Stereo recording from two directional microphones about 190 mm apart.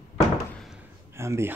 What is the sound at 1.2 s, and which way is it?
Speech, 15° right (ahead or behind).